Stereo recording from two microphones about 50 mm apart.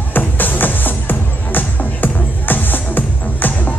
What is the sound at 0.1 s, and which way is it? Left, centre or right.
Music, left.